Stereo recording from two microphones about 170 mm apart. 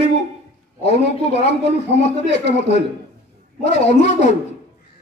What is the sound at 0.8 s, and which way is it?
Speech, 40° left (ahead or behind).